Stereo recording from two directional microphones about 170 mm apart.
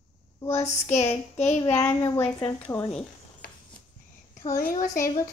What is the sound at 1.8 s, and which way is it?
A woman's voice, 15° left (ahead or behind).